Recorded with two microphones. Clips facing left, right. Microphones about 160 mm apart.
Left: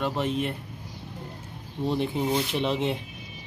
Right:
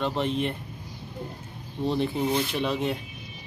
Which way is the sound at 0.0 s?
5° left (ahead or behind).